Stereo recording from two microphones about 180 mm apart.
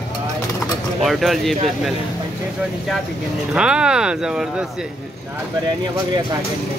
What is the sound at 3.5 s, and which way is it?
Speech, 5° right (ahead or behind).